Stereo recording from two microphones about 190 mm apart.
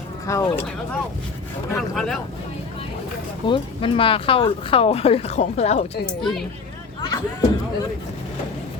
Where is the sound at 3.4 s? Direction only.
25° left (ahead or behind).